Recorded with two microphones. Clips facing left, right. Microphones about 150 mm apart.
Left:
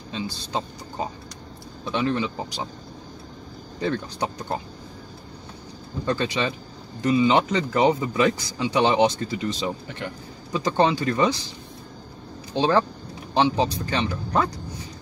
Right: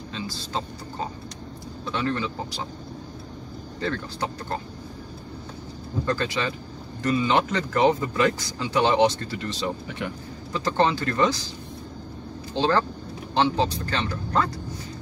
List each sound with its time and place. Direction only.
0.1 s speech: 15° left (ahead or behind)
1.9 s speech: 15° left (ahead or behind)
3.8 s speech: 15° left (ahead or behind)
6.0 s speech: 15° left (ahead or behind)
12.5 s speech: 15° left (ahead or behind)